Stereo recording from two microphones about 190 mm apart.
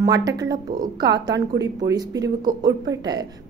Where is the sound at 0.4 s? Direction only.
20° right (ahead or behind).